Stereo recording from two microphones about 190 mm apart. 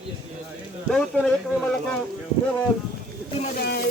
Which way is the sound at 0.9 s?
5° left (ahead or behind).